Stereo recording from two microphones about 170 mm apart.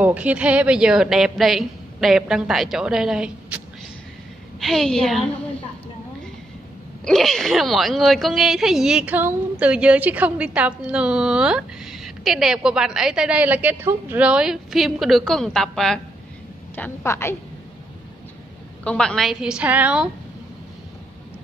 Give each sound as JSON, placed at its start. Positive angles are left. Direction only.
{"t": 0.0, "sound": "a woman's voice", "side_deg": -10}
{"t": 7.1, "sound": "a woman's voice", "side_deg": 0}
{"t": 16.7, "sound": "a woman's voice", "side_deg": 15}
{"t": 18.9, "sound": "a woman's voice", "side_deg": 5}